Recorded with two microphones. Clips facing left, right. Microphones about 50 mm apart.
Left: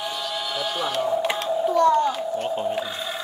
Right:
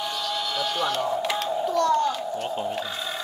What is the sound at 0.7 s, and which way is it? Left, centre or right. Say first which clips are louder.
Speech: even; centre.